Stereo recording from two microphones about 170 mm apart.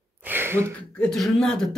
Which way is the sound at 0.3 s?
15° right (ahead or behind).